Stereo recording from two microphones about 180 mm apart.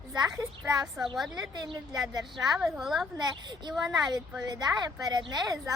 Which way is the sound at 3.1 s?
25° right (ahead or behind).